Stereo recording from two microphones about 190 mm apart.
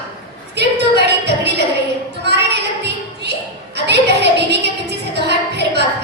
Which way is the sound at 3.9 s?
60° right (ahead or behind).